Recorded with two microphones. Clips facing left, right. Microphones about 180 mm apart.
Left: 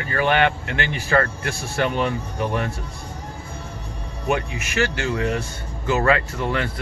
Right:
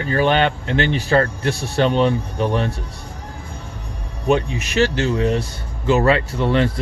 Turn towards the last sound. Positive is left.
turn(degrees=-30)  # may be behind; listen again after turning